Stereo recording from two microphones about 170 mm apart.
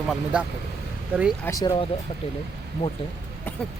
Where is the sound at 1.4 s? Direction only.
20° left (ahead or behind).